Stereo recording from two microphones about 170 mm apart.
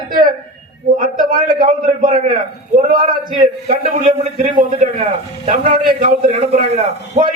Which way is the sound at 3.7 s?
55° right (ahead or behind).